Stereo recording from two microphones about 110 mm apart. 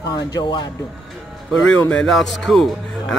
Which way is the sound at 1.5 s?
10° left (ahead or behind).